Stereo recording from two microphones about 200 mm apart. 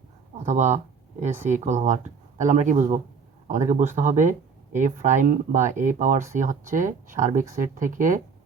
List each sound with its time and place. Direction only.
0.3 s speech: 35° right (ahead or behind)